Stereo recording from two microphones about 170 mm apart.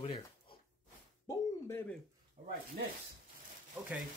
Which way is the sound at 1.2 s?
20° left (ahead or behind).